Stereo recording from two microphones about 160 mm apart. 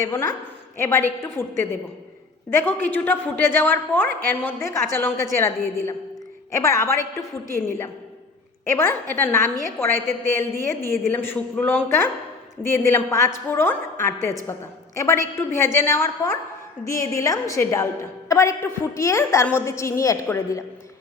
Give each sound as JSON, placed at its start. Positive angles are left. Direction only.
{"t": 0.0, "sound": "a woman's voice", "side_deg": 15}
{"t": 8.6, "sound": "a woman's voice", "side_deg": 15}
{"t": 14.9, "sound": "a woman's voice", "side_deg": 15}